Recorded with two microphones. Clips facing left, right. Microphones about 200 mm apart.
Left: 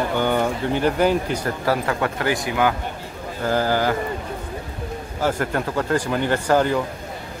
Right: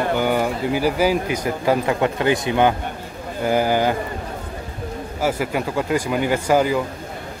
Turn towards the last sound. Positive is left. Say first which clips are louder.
# right 1 dB
turn(degrees=-10)  # may be behind; listen again after turning